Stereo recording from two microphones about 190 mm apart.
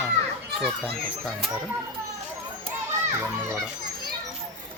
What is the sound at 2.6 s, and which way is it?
Children playing, 15° right (ahead or behind).